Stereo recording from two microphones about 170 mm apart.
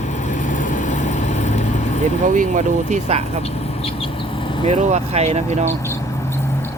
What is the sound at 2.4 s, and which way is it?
Speech, 45° right (ahead or behind).